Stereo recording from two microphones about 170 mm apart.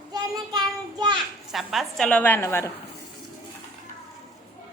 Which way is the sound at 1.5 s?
Centre (ahead or behind).